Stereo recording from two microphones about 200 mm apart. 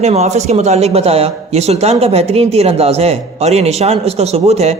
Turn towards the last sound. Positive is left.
turn(degrees=-30)  # may be behind; listen again after turning